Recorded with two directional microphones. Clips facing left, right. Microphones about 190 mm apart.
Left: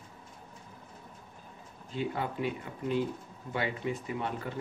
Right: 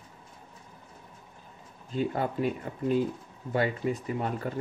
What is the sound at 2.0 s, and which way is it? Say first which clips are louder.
Speech: right 4 dB; 45° right (ahead or behind).